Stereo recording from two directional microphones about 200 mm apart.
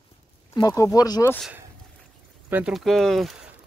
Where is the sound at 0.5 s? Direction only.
15° left (ahead or behind).